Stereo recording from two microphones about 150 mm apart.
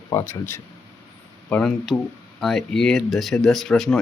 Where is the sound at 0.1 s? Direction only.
15° left (ahead or behind).